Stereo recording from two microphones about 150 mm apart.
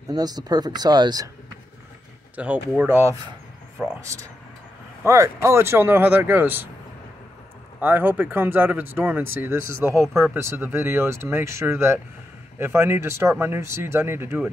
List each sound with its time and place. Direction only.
0.1 s speech: 25° right (ahead or behind)
2.3 s speech: 10° right (ahead or behind)
3.7 s a sound: 5° right (ahead or behind)
5.0 s speech: 20° right (ahead or behind)
7.8 s speech: 10° right (ahead or behind)